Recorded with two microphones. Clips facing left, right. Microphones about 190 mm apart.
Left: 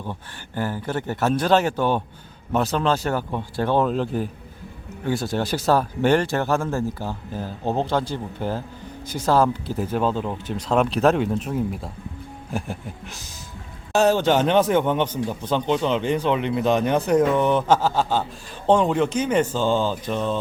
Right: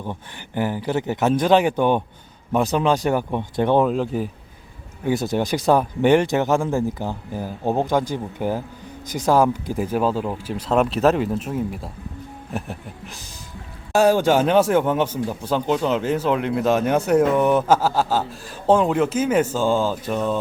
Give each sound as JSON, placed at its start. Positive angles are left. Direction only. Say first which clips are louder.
{"t": 0.0, "sound": "speech", "louder": "right 2 dB", "side_deg": -15}
{"t": 3.8, "sound": "speech", "louder": "right 1 dB", "side_deg": -5}
{"t": 5.0, "sound": "speech", "louder": "right 3 dB", "side_deg": -20}
{"t": 12.5, "sound": "a sound", "louder": "left 1 dB", "side_deg": 0}
{"t": 13.9, "sound": "speech", "louder": "right 2 dB", "side_deg": -10}